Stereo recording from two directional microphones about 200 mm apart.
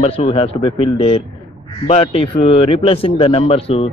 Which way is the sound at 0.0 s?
25° left (ahead or behind).